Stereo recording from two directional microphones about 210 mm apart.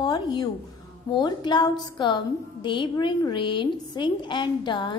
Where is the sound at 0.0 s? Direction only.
20° left (ahead or behind).